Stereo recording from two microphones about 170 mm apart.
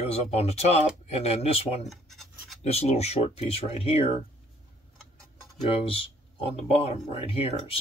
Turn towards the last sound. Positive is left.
turn(degrees=35)  # may be behind; listen again after turning